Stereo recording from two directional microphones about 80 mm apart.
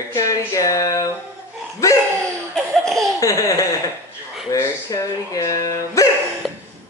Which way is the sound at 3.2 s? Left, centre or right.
Left.